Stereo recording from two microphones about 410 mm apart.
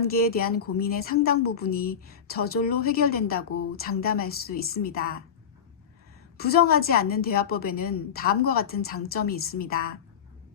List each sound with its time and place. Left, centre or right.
0.0 s a woman's voice: left
6.3 s a woman's voice: left